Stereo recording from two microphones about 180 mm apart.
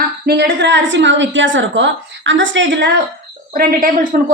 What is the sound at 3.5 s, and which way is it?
Speech, 50° right (ahead or behind).